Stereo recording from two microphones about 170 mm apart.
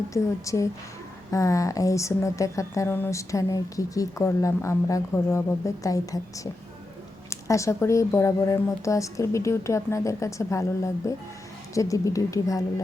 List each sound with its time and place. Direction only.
0.1 s speech: 20° left (ahead or behind)